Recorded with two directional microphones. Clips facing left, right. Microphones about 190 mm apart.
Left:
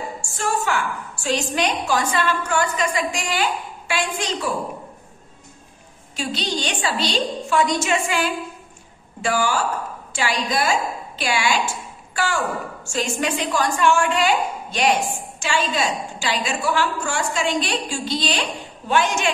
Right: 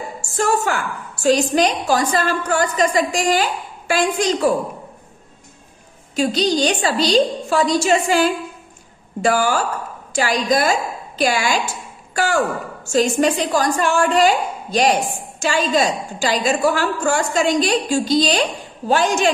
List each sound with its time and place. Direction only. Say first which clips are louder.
0.2 s a woman's voice: right 7 dB; 45° right (ahead or behind)
6.1 s a woman's voice: right 8 dB; 40° right (ahead or behind)
12.8 s a woman's voice: right 9 dB; 35° right (ahead or behind)